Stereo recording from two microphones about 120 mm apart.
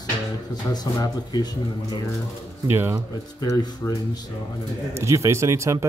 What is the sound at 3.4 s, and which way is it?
Speech, 25° left (ahead or behind).